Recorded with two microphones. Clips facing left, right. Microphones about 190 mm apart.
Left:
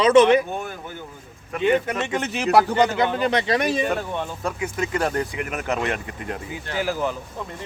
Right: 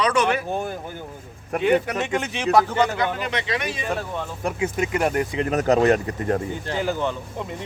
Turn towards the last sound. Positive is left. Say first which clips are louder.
# even
turn(degrees=5)  # may be behind; listen again after turning